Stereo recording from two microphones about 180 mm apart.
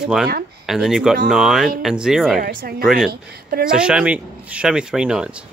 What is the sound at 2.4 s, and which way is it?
Speech, 50° right (ahead or behind).